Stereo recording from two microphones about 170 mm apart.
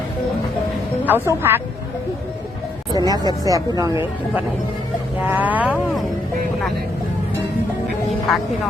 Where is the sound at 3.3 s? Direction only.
20° right (ahead or behind).